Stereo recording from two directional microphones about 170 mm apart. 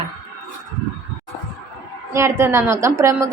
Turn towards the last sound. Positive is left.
turn(degrees=-15)  # may be behind; listen again after turning